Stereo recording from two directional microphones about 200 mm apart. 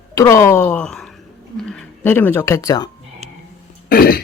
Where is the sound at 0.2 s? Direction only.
15° left (ahead or behind).